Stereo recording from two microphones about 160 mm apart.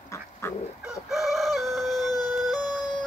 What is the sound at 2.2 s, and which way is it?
Music, centre (ahead or behind).